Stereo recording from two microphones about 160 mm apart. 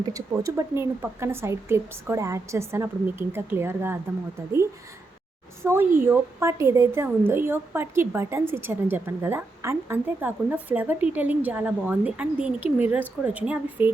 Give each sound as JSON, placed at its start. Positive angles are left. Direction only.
{"t": 0.1, "sound": "a woman's voice", "side_deg": -20}
{"t": 5.6, "sound": "a woman's voice", "side_deg": -10}